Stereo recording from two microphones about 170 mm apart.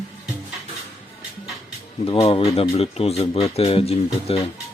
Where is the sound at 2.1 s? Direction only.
35° left (ahead or behind).